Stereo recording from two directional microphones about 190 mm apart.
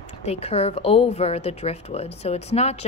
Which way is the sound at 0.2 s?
35° left (ahead or behind).